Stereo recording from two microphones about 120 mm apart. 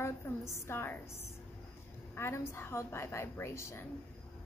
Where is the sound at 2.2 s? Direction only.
20° left (ahead or behind).